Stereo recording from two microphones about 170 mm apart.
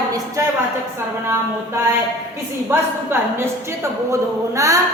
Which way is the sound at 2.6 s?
15° right (ahead or behind).